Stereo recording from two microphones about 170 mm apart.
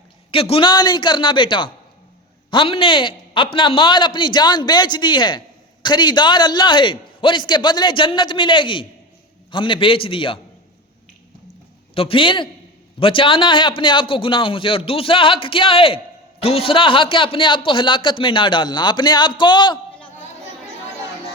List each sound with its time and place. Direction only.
0.3 s a man's voice: 35° left (ahead or behind)
11.9 s a man's voice: 30° left (ahead or behind)